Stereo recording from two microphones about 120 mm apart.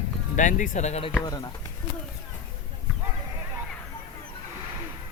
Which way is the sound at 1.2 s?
30° left (ahead or behind).